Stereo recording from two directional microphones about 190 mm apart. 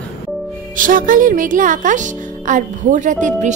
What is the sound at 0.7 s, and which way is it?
A woman's voice, 45° right (ahead or behind).